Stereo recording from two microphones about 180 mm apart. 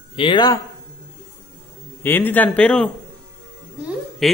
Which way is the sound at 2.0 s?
10° left (ahead or behind).